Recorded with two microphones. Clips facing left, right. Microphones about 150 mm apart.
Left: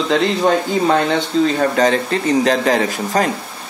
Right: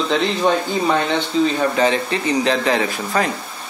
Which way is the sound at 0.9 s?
40° left (ahead or behind).